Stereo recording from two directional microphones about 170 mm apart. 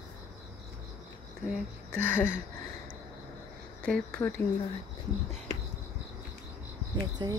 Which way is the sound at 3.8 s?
5° left (ahead or behind).